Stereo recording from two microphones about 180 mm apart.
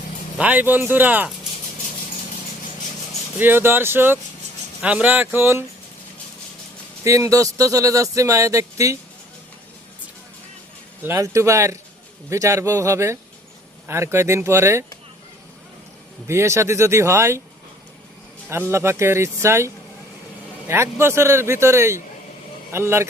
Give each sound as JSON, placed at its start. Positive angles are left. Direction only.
{"t": 0.3, "sound": "speech", "side_deg": -10}
{"t": 3.3, "sound": "speech", "side_deg": -10}
{"t": 7.0, "sound": "speech", "side_deg": -15}
{"t": 11.0, "sound": "speech", "side_deg": -15}
{"t": 16.2, "sound": "speech", "side_deg": -15}
{"t": 18.7, "sound": "speech", "side_deg": -15}